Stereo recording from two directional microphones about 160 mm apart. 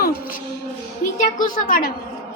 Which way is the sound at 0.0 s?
65° left (ahead or behind).